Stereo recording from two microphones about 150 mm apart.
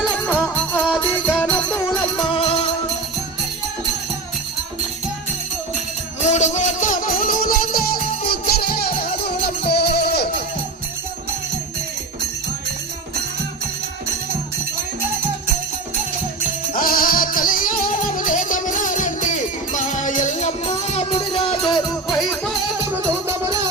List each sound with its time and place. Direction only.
0.3 s music: 10° left (ahead or behind)
6.2 s music: 55° left (ahead or behind); by 7.9 s 80° left
8.3 s music: 90° left
16.7 s music: 75° left (ahead or behind); by 22.2 s 30° left (ahead or behind)
23.0 s music: 20° right (ahead or behind)